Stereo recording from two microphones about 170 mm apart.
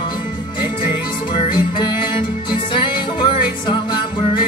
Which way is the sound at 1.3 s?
30° left (ahead or behind).